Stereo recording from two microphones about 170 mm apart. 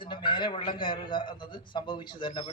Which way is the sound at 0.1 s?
30° left (ahead or behind).